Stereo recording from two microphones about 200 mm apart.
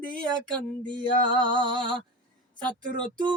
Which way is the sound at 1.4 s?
25° right (ahead or behind).